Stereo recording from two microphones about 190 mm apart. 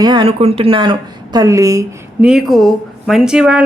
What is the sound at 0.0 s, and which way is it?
Speech, 25° right (ahead or behind).